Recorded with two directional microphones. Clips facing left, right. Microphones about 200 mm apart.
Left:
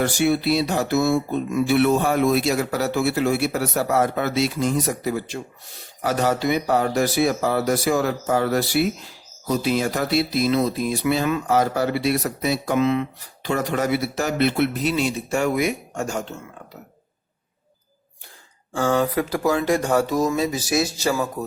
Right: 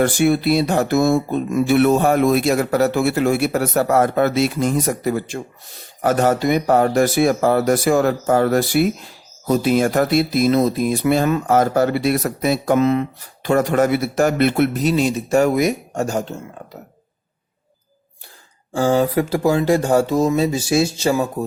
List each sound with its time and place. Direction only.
0.0 s speech: 50° right (ahead or behind); by 16.3 s 35° right (ahead or behind)
18.7 s speech: 35° right (ahead or behind)